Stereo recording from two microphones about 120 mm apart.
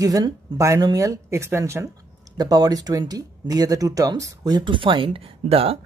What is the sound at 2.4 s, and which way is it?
Speech, 35° right (ahead or behind).